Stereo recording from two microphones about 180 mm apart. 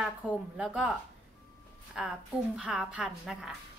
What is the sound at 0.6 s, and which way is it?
Speech, 5° right (ahead or behind).